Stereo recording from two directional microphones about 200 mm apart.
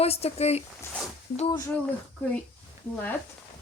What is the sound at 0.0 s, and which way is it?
Speech, 30° left (ahead or behind).